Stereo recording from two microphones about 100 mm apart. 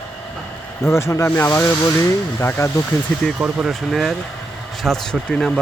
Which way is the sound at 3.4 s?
5° right (ahead or behind).